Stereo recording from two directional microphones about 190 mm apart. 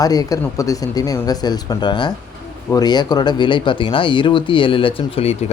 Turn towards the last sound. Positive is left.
turn(degrees=35)  # may be behind; listen again after turning